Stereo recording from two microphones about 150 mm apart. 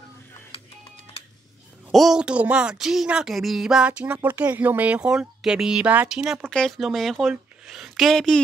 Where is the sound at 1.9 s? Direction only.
Centre (ahead or behind).